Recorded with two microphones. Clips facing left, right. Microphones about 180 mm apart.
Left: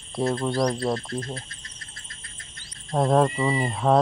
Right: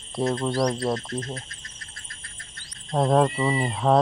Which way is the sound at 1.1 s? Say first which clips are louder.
Even; 30° left (ahead or behind).